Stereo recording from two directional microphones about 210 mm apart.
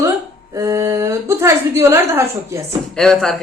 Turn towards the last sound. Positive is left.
turn(degrees=0)  # may be behind; listen again after turning